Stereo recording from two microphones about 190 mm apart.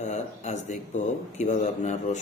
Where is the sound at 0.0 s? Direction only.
35° left (ahead or behind).